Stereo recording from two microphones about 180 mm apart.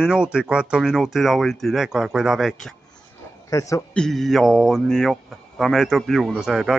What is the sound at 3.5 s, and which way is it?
Speech, 20° left (ahead or behind).